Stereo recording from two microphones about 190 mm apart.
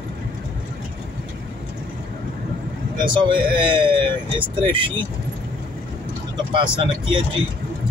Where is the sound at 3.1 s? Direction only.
25° right (ahead or behind).